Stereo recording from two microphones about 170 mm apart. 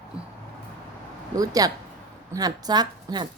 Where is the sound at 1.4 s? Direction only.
20° right (ahead or behind).